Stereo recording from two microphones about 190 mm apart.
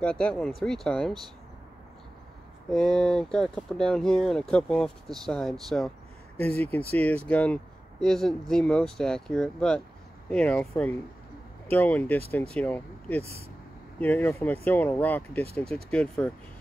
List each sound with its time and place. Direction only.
0.0 s speech: 5° left (ahead or behind)
2.7 s speech: 5° left (ahead or behind)
13.2 s speech: 15° right (ahead or behind)
13.9 s speech: 10° left (ahead or behind)